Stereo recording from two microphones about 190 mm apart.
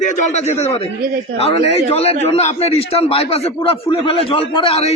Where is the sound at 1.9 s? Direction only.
35° left (ahead or behind).